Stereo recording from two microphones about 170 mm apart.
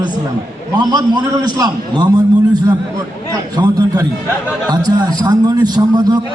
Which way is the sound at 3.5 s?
20° right (ahead or behind).